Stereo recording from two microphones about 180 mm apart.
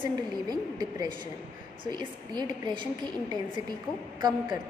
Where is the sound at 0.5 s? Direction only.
20° right (ahead or behind).